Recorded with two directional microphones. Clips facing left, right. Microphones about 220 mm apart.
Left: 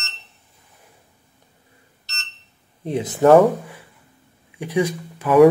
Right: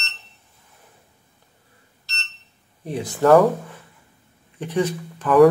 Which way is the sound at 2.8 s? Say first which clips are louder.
Left 3 dB; 20° left (ahead or behind).